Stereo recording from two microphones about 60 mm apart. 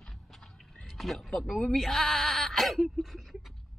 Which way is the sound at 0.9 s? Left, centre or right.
Centre.